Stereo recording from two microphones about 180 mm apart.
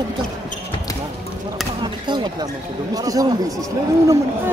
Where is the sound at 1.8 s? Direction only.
25° right (ahead or behind).